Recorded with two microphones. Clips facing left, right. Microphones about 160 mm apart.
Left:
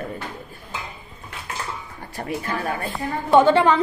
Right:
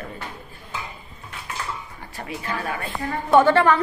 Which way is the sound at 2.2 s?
40° left (ahead or behind).